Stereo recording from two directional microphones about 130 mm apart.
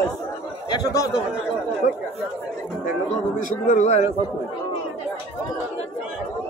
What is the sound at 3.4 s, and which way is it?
Speech, 75° left (ahead or behind).